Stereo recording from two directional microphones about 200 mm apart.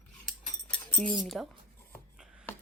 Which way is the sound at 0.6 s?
5° left (ahead or behind).